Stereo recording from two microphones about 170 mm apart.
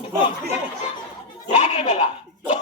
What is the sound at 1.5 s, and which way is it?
Goat, 40° left (ahead or behind).